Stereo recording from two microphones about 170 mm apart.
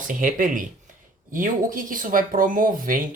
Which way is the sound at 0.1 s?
50° right (ahead or behind).